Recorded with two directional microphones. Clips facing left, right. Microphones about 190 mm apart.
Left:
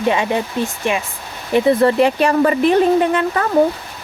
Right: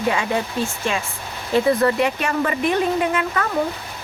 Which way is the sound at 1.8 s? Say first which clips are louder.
Left 6 dB; 30° left (ahead or behind).